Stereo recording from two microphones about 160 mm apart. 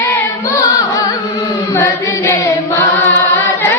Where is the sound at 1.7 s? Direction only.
20° left (ahead or behind).